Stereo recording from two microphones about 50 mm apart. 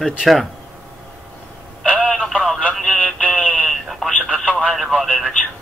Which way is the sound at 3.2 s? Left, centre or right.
Left.